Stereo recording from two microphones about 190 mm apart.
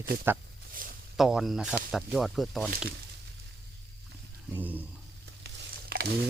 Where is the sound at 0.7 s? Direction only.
45° right (ahead or behind).